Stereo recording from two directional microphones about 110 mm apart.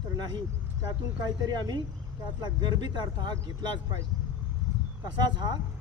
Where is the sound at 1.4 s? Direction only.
35° right (ahead or behind).